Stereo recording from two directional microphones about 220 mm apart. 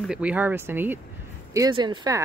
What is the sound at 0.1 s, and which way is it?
Speech, 5° right (ahead or behind).